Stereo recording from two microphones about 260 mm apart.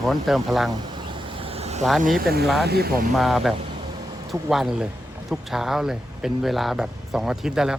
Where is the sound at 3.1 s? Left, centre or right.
Centre.